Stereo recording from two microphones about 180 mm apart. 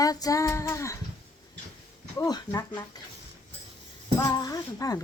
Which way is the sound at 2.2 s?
20° left (ahead or behind).